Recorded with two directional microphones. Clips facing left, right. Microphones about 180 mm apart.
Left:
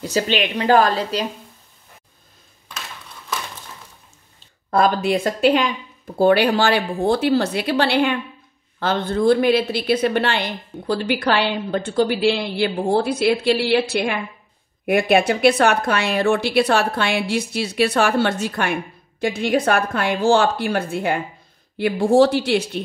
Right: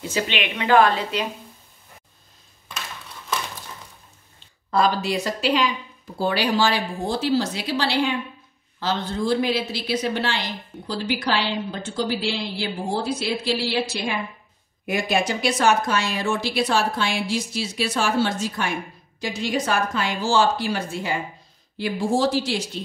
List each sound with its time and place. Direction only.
0.0 s a woman's voice: 40° left (ahead or behind)
4.6 s a woman's voice: 50° left (ahead or behind)